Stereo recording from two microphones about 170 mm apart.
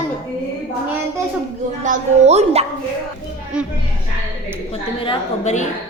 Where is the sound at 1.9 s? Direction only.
40° right (ahead or behind).